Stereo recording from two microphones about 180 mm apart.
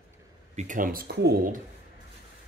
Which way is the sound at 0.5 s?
45° right (ahead or behind).